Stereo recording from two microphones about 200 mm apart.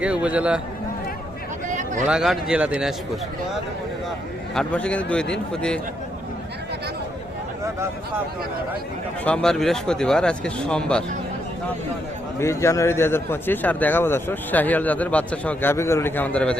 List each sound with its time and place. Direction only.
0.0 s speech: 5° right (ahead or behind)
1.6 s a sound: 40° right (ahead or behind)
2.0 s speech: 5° right (ahead or behind)
4.5 s speech: 5° left (ahead or behind)
9.2 s speech: 5° left (ahead or behind)
12.4 s a man's voice: 15° left (ahead or behind)